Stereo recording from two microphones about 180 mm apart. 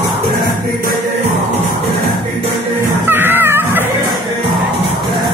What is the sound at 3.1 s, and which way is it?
Music, 10° right (ahead or behind).